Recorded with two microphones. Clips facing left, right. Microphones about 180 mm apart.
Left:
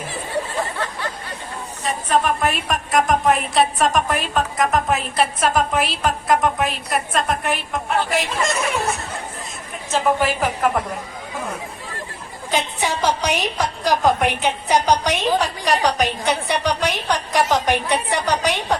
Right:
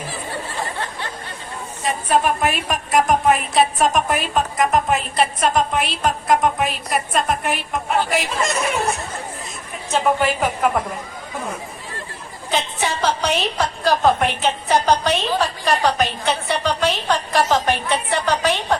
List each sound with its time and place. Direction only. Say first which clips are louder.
2.4 s a woman's voice: even; centre (ahead or behind)
9.9 s a woman's voice: even; centre (ahead or behind)
12.5 s a woman's voice: even; 10° left (ahead or behind)